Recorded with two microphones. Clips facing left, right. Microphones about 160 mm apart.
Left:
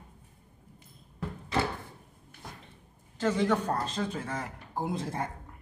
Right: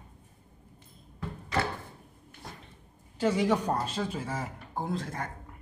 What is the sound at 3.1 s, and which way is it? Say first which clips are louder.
Speech: right 1 dB; 10° right (ahead or behind).